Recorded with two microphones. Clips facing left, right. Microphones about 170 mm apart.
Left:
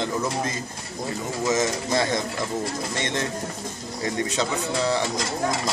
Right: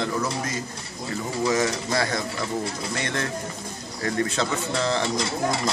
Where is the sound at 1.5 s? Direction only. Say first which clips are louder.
Left 2 dB; 20° left (ahead or behind).